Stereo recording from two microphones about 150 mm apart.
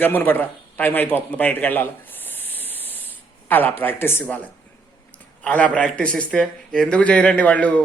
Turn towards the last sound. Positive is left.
turn(degrees=10)  # may be behind; listen again after turning